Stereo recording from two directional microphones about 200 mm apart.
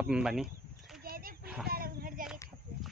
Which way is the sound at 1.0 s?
50° right (ahead or behind).